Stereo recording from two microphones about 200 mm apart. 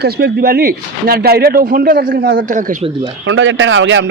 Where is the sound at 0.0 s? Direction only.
50° right (ahead or behind).